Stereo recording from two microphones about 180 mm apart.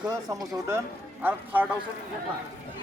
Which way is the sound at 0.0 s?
20° right (ahead or behind).